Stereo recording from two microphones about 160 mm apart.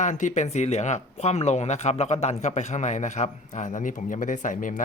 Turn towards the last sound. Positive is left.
turn(degrees=55)  # may be behind; listen again after turning